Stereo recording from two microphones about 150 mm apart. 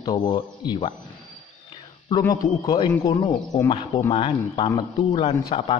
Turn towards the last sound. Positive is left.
turn(degrees=35)  # may be behind; listen again after turning